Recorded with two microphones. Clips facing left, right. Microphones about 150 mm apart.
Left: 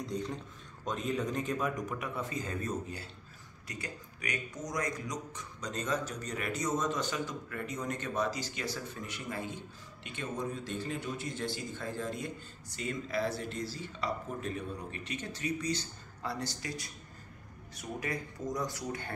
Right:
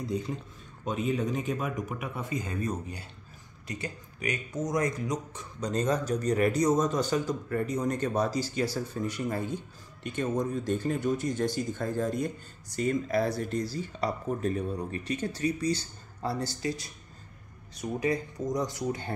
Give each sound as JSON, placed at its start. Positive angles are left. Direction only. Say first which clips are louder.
{"t": 0.0, "sound": "a man's voice", "louder": "right 4 dB", "side_deg": -5}
{"t": 18.0, "sound": "speech", "louder": "right 8 dB", "side_deg": -20}